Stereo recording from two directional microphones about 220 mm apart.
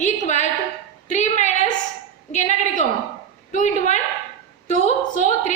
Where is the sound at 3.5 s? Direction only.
35° left (ahead or behind).